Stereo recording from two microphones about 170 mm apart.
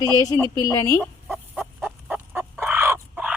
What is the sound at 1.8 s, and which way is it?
Fowl, 10° right (ahead or behind).